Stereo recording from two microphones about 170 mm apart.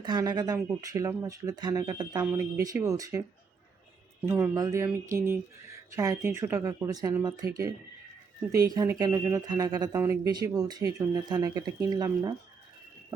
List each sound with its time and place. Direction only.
0.0 s speech: 25° right (ahead or behind)
4.3 s speech: 15° right (ahead or behind)